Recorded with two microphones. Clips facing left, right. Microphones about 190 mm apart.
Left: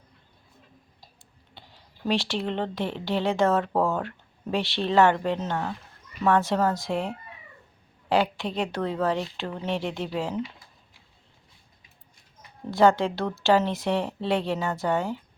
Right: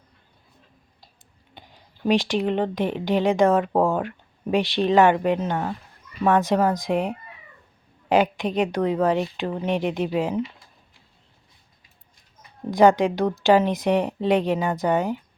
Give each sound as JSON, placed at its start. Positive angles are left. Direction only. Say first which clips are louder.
{"t": 1.5, "sound": "a woman's voice", "louder": "right 3 dB", "side_deg": -15}
{"t": 12.7, "sound": "a woman's voice", "louder": "right 4 dB", "side_deg": -15}